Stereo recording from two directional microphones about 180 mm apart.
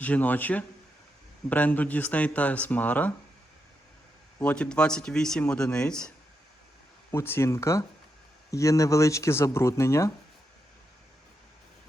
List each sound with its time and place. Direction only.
0.0 s speech: 10° left (ahead or behind)
4.4 s speech: 5° left (ahead or behind)
7.1 s speech: 15° left (ahead or behind)